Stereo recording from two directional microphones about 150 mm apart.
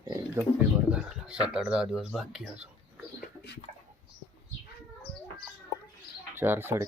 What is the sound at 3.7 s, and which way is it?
Bird, 60° right (ahead or behind).